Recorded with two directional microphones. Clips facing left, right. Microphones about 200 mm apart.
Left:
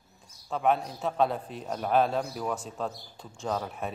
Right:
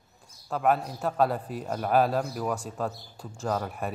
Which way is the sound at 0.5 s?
Centre (ahead or behind).